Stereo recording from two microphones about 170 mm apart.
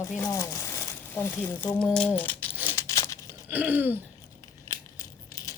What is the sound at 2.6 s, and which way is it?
Tearing, 15° left (ahead or behind).